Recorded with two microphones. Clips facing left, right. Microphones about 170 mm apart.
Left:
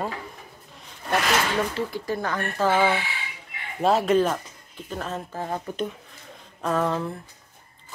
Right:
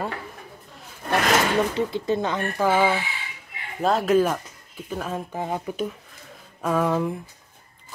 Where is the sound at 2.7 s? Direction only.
10° right (ahead or behind).